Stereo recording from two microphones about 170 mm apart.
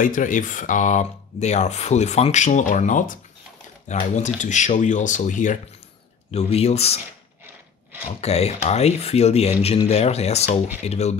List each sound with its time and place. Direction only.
0.0 s speech: 50° left (ahead or behind)
6.3 s speech: 40° left (ahead or behind)
8.2 s speech: 40° left (ahead or behind)